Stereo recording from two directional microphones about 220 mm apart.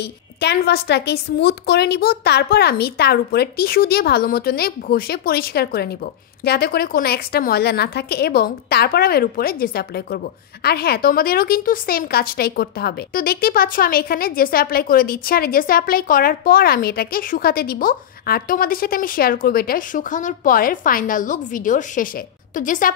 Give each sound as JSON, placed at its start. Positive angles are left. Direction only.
{"t": 0.0, "sound": "a woman's voice", "side_deg": 50}